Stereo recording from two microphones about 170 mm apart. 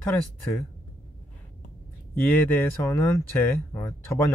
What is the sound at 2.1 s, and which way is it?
Speech, 10° left (ahead or behind).